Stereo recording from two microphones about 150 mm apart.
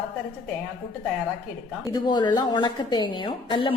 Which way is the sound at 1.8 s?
30° left (ahead or behind).